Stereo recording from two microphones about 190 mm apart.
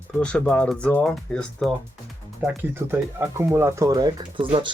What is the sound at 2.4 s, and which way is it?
Speech, 10° right (ahead or behind).